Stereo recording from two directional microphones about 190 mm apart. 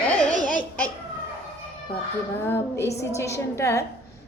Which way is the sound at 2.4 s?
10° left (ahead or behind).